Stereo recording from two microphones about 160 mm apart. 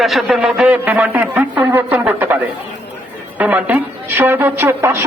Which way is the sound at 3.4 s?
10° right (ahead or behind).